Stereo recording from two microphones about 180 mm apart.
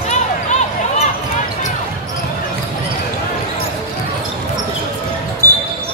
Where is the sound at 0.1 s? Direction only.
40° left (ahead or behind).